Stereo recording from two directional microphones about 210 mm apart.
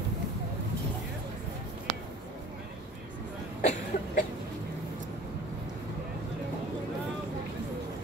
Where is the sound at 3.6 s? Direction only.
40° left (ahead or behind).